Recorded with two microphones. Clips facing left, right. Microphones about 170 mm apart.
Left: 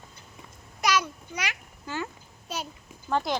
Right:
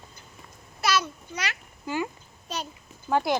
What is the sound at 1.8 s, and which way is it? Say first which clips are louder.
Speech: right 4 dB; 15° right (ahead or behind).